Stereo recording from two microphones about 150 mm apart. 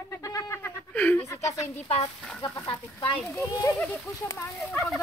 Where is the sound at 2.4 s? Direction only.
15° left (ahead or behind).